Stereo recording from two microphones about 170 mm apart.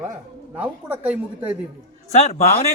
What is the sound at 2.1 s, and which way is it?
Speech, 40° left (ahead or behind).